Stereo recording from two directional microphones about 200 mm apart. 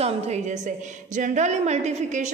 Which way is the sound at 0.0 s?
35° right (ahead or behind).